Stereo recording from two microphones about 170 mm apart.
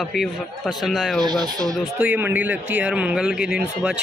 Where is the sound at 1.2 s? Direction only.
25° right (ahead or behind).